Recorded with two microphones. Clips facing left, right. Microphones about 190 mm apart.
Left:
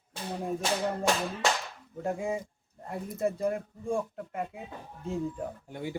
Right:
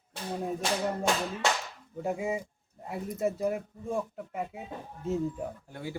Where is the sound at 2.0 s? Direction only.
5° right (ahead or behind).